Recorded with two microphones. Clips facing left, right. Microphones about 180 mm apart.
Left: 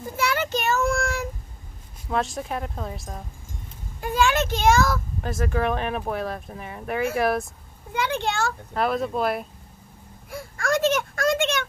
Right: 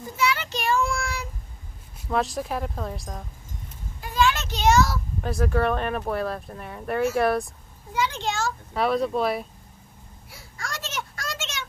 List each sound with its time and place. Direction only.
0.2 s child singing: 50° left (ahead or behind)
2.0 s speech: centre (ahead or behind)
4.0 s a sound: 50° left (ahead or behind)
5.2 s speech: centre (ahead or behind)
7.9 s a child's voice: 60° left (ahead or behind)
8.7 s speech: centre (ahead or behind)
10.3 s a sound: 55° left (ahead or behind)